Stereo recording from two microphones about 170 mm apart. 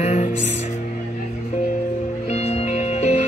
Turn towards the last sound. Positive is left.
turn(degrees=40)  # may be behind; listen again after turning